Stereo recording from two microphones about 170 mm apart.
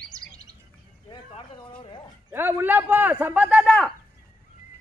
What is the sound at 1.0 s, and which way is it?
Bird, 30° left (ahead or behind).